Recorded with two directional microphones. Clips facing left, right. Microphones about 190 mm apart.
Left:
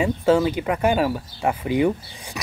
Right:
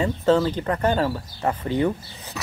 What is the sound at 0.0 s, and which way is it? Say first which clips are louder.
Speech: left 1 dB; 10° left (ahead or behind).